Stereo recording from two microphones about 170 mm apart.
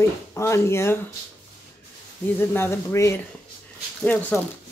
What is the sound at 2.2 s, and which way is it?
Speech, 10° left (ahead or behind).